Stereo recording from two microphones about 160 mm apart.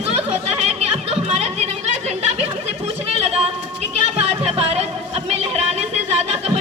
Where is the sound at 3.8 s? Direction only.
40° right (ahead or behind).